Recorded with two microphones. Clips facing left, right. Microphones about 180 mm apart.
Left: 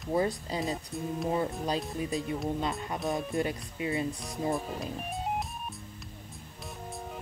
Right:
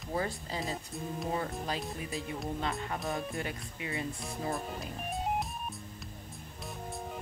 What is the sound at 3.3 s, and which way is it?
Speech, 25° left (ahead or behind).